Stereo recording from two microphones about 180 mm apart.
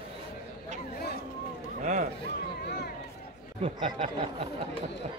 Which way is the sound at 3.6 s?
30° right (ahead or behind).